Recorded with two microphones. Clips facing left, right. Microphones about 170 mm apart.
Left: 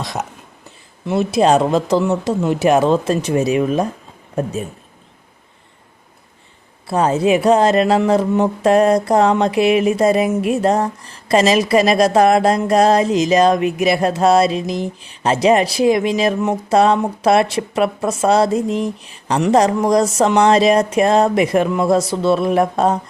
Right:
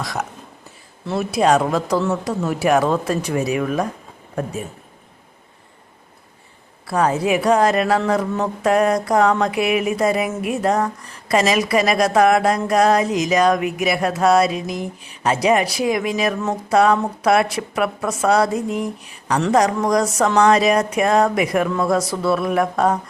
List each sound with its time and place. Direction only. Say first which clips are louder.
0.0 s speech: left 1 dB; 25° left (ahead or behind)
6.8 s speech: left 3 dB; 25° left (ahead or behind)